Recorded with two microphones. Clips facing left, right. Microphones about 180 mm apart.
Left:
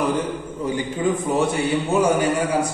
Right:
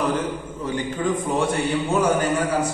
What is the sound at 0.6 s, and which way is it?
A man's voice, 10° left (ahead or behind).